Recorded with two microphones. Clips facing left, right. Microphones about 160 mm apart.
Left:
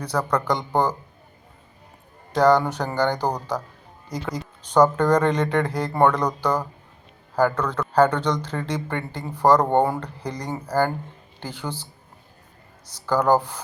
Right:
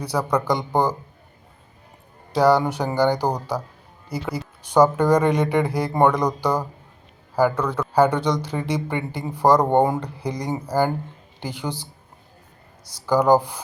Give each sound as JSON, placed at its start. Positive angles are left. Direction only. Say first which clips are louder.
{"t": 0.0, "sound": "speech", "louder": "right 1 dB", "side_deg": -10}
{"t": 2.3, "sound": "speech", "louder": "even", "side_deg": -10}
{"t": 12.9, "sound": "speech", "louder": "right 3 dB", "side_deg": -10}